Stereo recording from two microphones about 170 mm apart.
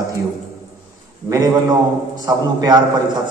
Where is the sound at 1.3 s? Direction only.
20° right (ahead or behind).